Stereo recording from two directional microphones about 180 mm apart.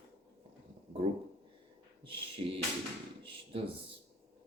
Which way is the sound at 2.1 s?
30° right (ahead or behind).